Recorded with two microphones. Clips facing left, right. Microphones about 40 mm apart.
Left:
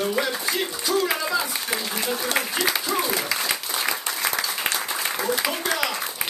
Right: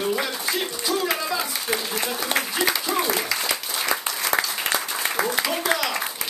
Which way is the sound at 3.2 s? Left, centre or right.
Centre.